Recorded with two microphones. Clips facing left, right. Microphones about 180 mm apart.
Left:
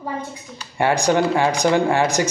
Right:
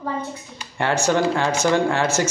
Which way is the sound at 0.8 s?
15° left (ahead or behind).